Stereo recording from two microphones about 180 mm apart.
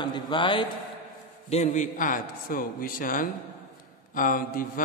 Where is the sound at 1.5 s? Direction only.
40° left (ahead or behind).